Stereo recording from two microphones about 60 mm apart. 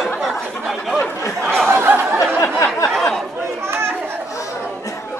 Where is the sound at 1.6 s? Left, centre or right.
Right.